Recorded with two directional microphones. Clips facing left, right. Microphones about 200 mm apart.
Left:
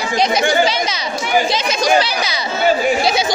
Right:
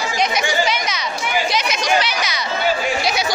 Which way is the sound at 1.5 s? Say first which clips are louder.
Left 4 dB; 30° left (ahead or behind).